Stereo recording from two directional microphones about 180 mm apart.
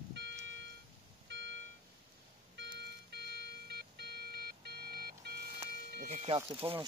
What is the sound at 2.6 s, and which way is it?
Alarm clock, 70° right (ahead or behind).